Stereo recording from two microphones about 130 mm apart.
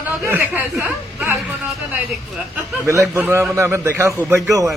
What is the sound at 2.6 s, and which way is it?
A man's voice, 20° right (ahead or behind).